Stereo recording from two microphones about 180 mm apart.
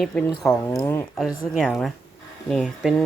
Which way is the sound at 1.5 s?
Centre (ahead or behind).